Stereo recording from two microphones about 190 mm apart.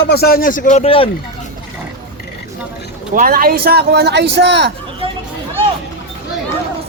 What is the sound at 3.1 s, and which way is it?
Speech, 50° right (ahead or behind).